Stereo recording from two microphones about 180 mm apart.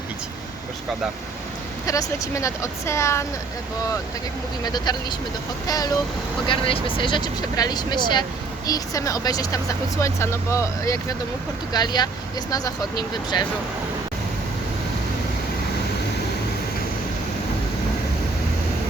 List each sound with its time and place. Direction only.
1.9 s speech: 20° left (ahead or behind)
4.6 s speech: 25° left (ahead or behind)